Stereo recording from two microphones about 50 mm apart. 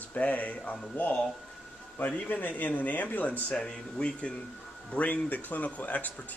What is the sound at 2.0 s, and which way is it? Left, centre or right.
Speech, left.